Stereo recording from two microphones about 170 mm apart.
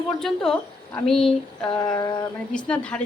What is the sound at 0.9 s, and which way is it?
Speech, 5° left (ahead or behind).